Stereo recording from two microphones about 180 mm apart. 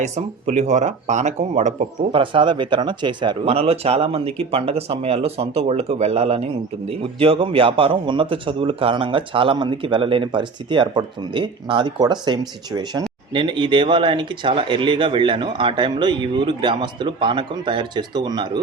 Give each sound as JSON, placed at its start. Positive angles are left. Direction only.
{"t": 0.0, "sound": "speech", "side_deg": -40}
{"t": 2.1, "sound": "speech", "side_deg": -30}